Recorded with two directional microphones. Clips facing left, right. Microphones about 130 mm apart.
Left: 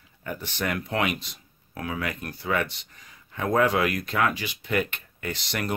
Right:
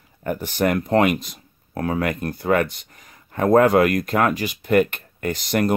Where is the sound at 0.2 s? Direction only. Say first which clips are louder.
Right 9 dB; 45° right (ahead or behind).